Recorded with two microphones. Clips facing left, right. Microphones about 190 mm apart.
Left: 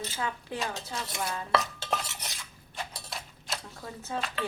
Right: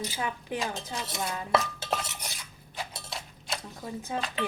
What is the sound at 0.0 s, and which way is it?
Speech, 15° right (ahead or behind).